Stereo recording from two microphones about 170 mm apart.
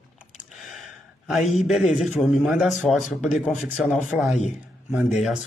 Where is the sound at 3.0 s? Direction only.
45° left (ahead or behind).